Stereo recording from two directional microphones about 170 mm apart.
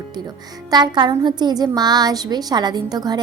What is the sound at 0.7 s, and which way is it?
A woman's voice, 25° right (ahead or behind).